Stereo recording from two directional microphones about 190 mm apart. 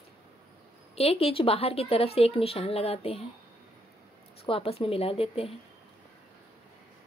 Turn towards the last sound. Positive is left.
turn(degrees=30)  # may be behind; listen again after turning